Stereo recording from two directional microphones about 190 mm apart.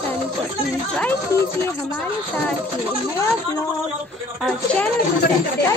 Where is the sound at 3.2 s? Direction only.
15° left (ahead or behind).